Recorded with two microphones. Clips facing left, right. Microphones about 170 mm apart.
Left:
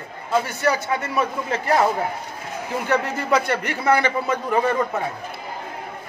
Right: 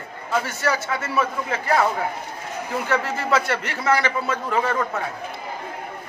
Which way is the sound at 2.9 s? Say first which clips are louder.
Left 2 dB; 15° left (ahead or behind).